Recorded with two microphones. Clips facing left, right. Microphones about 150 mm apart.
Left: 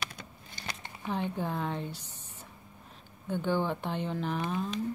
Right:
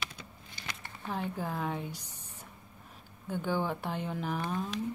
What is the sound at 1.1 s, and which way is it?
Speech, 5° right (ahead or behind).